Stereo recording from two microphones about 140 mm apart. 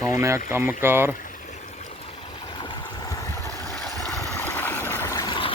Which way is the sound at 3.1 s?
20° left (ahead or behind).